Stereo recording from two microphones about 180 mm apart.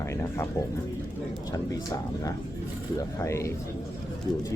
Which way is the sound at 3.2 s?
15° left (ahead or behind).